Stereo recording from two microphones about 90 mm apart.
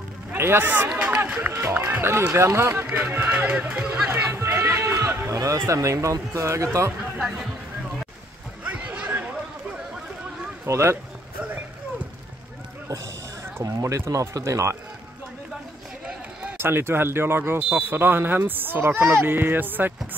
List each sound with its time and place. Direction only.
0.3 s a man's voice: 25° right (ahead or behind)
0.9 s run: 15° right (ahead or behind)
1.5 s speech: 25° right (ahead or behind)
2.7 s speech: 20° right (ahead or behind)
4.1 s speech: 30° right (ahead or behind)
7.2 s speech: 5° right (ahead or behind)
8.6 s a sound: 15° right (ahead or behind)
10.7 s speech: 30° right (ahead or behind)
13.6 s speech: 40° right (ahead or behind)
16.5 s speech: 25° right (ahead or behind)